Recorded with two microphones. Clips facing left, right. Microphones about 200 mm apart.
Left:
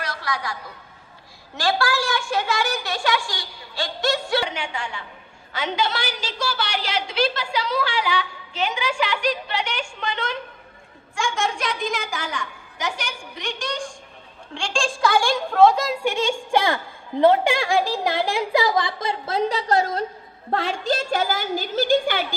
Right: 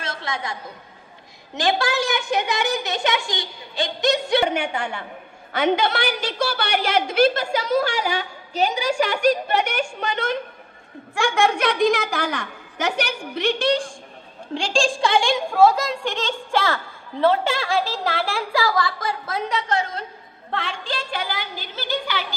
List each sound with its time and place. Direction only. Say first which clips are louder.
0.0 s a sound: even; 25° right (ahead or behind)
1.5 s a woman's voice: right 1 dB; 20° right (ahead or behind)
4.5 s a woman's voice: right 6 dB; 55° right (ahead or behind)
11.1 s a woman's voice: right 5 dB; 60° right (ahead or behind)
14.5 s a woman's voice: right 4 dB; 35° right (ahead or behind); by 15.4 s 20° right (ahead or behind)
15.5 s a woman's voice: left 1 dB; 5° right (ahead or behind); by 22.2 s 50° left (ahead or behind)